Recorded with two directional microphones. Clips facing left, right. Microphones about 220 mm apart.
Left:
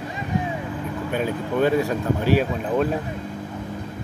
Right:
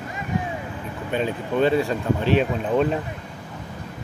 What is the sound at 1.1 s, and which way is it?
Speech, 10° left (ahead or behind).